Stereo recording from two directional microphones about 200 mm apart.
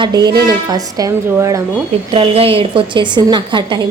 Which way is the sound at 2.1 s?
25° right (ahead or behind).